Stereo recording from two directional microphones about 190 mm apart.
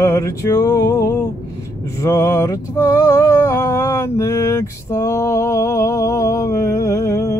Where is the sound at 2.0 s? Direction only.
15° left (ahead or behind).